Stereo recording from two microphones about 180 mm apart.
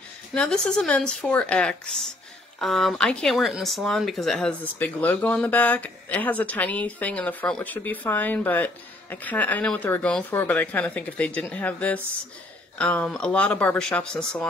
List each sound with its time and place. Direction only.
0.3 s speech: 5° left (ahead or behind)